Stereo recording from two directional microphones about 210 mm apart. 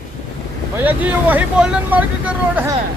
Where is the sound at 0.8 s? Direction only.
10° right (ahead or behind).